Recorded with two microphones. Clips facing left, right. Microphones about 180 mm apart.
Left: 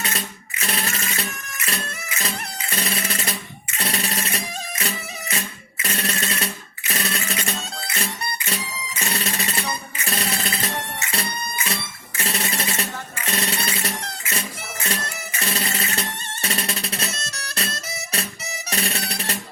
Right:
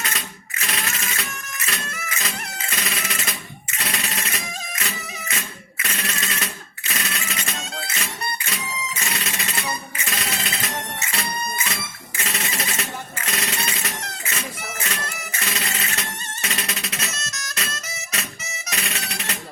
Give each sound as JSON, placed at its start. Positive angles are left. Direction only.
{"t": 0.0, "sound": "music", "side_deg": 30}
{"t": 6.9, "sound": "a sound", "side_deg": 35}
{"t": 7.9, "sound": "music", "side_deg": 30}